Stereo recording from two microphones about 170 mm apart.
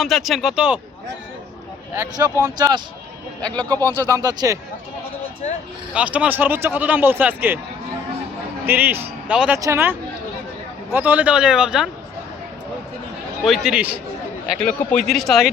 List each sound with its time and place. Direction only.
0.0 s a man's voice: centre (ahead or behind)
2.0 s speech: 25° right (ahead or behind)
3.6 s speech: 10° left (ahead or behind)
4.2 s speech: 20° right (ahead or behind)
5.4 s speech: 40° left (ahead or behind)
5.9 s a man's voice: 5° right (ahead or behind)
8.6 s a man's voice: 10° right (ahead or behind)
10.9 s a man's voice: 10° right (ahead or behind)
13.4 s a man's voice: centre (ahead or behind)
14.7 s a man's voice: 10° left (ahead or behind)